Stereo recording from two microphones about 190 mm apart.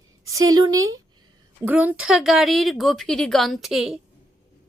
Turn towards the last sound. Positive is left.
turn(degrees=0)  # may be behind; listen again after turning